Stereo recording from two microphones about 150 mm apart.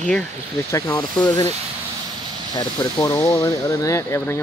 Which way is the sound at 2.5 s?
25° left (ahead or behind).